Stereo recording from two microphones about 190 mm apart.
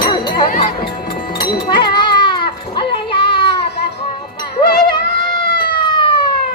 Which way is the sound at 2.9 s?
25° left (ahead or behind).